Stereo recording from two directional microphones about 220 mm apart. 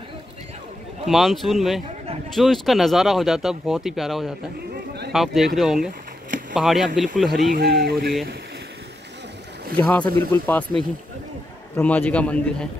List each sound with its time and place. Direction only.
1.0 s speech: centre (ahead or behind)
7.5 s speech: 45° right (ahead or behind)
9.8 s a man's voice: 5° left (ahead or behind)